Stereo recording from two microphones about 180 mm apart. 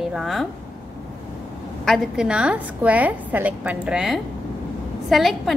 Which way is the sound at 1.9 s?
5° right (ahead or behind).